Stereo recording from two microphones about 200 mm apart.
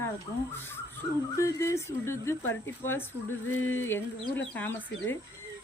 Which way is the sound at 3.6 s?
90° left.